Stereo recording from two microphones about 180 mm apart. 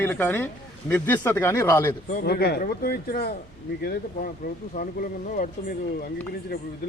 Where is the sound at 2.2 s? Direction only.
65° left (ahead or behind); by 5.5 s 45° left (ahead or behind).